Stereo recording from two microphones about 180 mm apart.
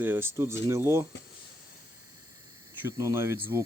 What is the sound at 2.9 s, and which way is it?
Speech, 15° right (ahead or behind).